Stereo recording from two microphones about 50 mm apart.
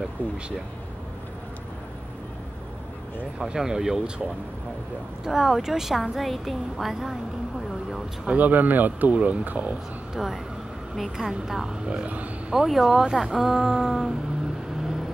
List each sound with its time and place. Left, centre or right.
3.3 s speech: centre
5.2 s a woman's voice: centre
8.4 s speech: right
10.1 s a woman's voice: centre
12.4 s speech: centre